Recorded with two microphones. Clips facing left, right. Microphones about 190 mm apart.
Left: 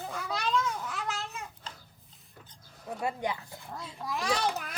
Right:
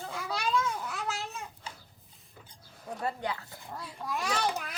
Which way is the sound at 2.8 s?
10° left (ahead or behind).